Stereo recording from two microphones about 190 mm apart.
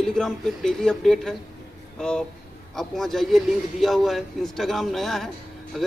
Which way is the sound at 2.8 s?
Centre (ahead or behind).